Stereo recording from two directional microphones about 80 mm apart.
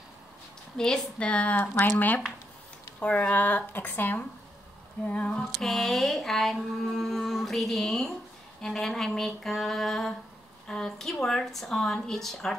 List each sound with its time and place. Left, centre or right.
0.7 s speech: centre
5.6 s speech: centre